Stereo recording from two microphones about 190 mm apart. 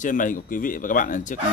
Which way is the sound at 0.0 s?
45° left (ahead or behind).